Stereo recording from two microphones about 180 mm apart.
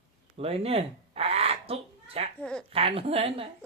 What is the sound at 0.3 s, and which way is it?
Fowl, 35° right (ahead or behind).